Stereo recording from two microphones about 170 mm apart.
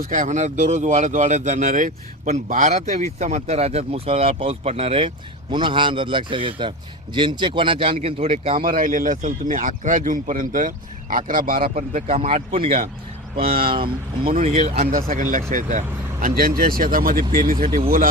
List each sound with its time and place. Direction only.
0.1 s speech: 45° right (ahead or behind)
8.6 s speech: 55° right (ahead or behind)
11.8 s speech: 45° right (ahead or behind)
14.8 s speech: 55° right (ahead or behind)